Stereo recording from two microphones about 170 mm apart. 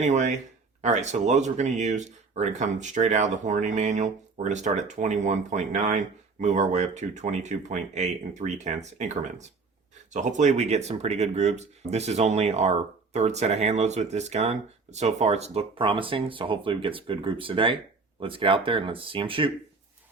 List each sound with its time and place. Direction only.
0.0 s speech: 45° right (ahead or behind)